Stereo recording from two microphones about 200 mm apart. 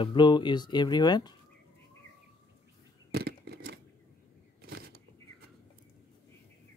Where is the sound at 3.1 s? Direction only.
50° right (ahead or behind).